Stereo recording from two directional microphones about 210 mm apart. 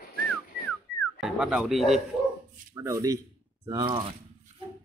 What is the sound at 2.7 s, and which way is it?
Speech, 15° right (ahead or behind).